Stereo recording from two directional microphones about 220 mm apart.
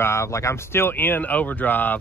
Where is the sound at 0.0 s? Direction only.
10° left (ahead or behind).